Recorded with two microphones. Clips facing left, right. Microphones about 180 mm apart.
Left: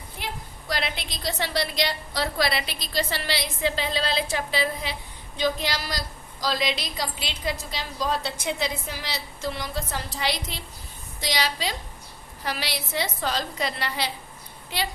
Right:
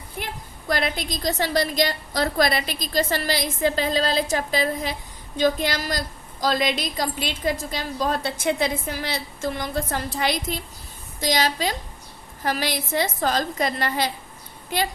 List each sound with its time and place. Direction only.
0.7 s a woman's voice: 45° right (ahead or behind)